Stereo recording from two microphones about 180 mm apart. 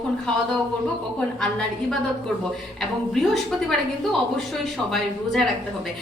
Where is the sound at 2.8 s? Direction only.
Centre (ahead or behind).